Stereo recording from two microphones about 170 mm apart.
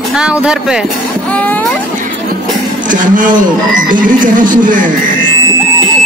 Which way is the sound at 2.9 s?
50° right (ahead or behind).